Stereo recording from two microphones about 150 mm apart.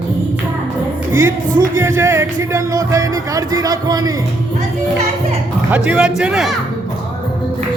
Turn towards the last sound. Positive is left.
turn(degrees=-5)  # may be behind; listen again after turning